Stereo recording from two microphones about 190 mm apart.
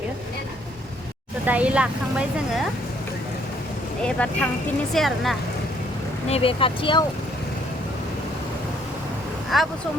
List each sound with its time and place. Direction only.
1.5 s speech: 5° right (ahead or behind)
4.0 s a woman's voice: 5° left (ahead or behind)
6.2 s speech: 30° left (ahead or behind)
9.5 s a woman's voice: centre (ahead or behind)